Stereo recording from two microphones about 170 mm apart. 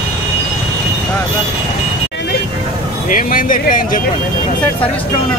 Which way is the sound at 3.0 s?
50° left (ahead or behind).